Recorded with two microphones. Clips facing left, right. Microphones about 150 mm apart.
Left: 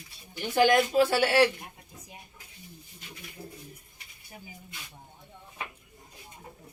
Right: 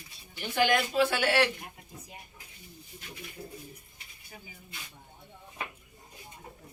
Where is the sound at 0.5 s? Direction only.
35° left (ahead or behind).